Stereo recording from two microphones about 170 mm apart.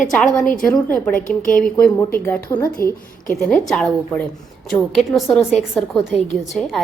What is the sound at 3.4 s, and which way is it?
Speech, centre (ahead or behind).